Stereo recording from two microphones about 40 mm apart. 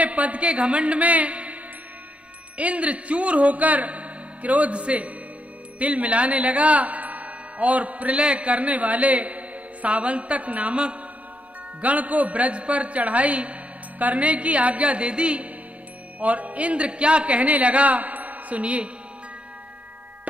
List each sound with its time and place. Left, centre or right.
0.0 s a man's voice: right